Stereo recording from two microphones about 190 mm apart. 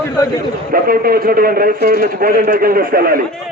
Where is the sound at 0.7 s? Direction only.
50° right (ahead or behind).